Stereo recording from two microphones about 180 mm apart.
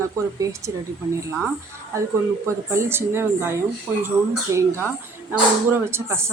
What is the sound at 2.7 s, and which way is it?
Speech, 15° right (ahead or behind).